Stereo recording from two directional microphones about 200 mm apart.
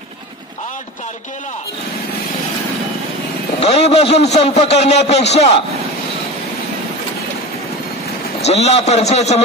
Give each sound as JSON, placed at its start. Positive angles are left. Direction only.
{"t": 3.6, "sound": "a man's voice", "side_deg": 30}
{"t": 8.4, "sound": "a man's voice", "side_deg": 30}